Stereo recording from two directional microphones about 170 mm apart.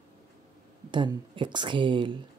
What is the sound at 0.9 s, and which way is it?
Speech, 30° right (ahead or behind).